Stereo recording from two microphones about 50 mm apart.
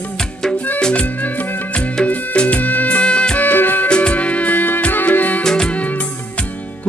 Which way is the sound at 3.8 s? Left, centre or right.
Centre.